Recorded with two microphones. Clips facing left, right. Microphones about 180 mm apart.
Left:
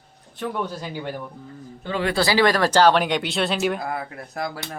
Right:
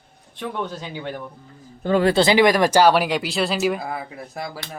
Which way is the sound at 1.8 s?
45° right (ahead or behind).